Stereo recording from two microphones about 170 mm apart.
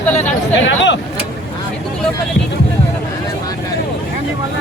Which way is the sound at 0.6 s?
90° left.